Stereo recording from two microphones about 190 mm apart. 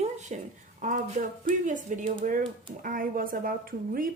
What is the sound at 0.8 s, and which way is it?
A woman's voice, 40° right (ahead or behind).